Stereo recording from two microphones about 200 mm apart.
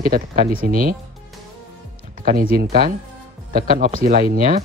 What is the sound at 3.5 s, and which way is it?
Speech, 45° right (ahead or behind).